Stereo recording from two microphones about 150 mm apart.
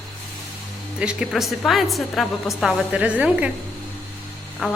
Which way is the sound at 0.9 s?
5° right (ahead or behind).